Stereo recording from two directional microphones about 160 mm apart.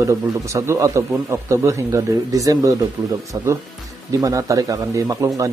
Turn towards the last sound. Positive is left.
turn(degrees=-20)  # may be behind; listen again after turning